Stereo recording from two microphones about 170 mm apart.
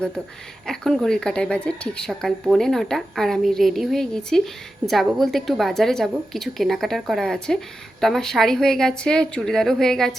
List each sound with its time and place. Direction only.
0.7 s a woman's voice: centre (ahead or behind)